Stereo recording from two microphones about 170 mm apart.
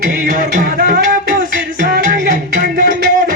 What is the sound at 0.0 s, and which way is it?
Music, 50° right (ahead or behind).